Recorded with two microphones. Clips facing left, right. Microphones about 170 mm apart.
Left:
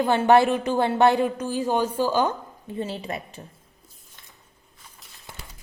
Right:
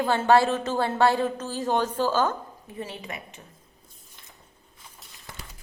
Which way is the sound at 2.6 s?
30° left (ahead or behind).